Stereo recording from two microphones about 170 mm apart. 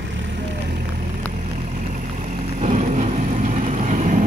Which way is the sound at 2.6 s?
45° right (ahead or behind).